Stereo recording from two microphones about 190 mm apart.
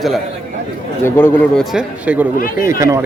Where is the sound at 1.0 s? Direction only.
10° left (ahead or behind).